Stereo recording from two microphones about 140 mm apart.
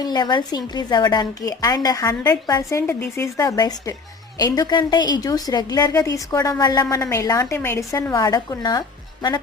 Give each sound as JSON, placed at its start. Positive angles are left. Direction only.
{"t": 0.0, "sound": "a woman's voice", "side_deg": 30}